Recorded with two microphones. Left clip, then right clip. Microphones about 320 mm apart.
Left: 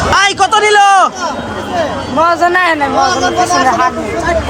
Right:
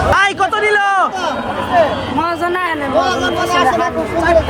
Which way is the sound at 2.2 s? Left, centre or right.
Centre.